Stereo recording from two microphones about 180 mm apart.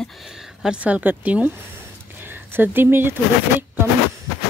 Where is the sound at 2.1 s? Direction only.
10° right (ahead or behind).